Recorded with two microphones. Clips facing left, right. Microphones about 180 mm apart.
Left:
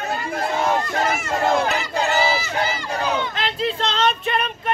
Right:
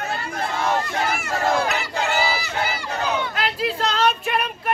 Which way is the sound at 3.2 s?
5° right (ahead or behind).